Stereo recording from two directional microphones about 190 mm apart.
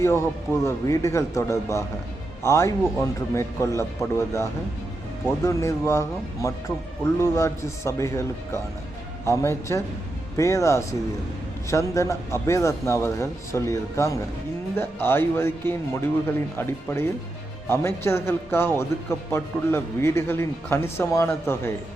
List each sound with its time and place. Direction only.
0.0 s speech: 15° left (ahead or behind)
5.5 s speech: 15° left (ahead or behind)